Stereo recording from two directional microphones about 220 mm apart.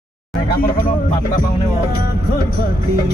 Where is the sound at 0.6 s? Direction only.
40° left (ahead or behind).